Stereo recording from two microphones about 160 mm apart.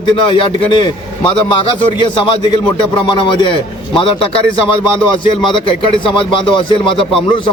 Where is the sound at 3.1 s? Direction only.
30° left (ahead or behind).